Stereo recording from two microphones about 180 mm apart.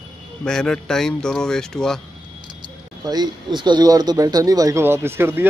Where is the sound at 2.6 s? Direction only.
20° right (ahead or behind).